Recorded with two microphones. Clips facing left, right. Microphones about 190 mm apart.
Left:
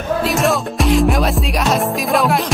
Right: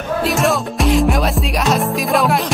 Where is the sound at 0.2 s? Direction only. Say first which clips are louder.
Right 1 dB; centre (ahead or behind).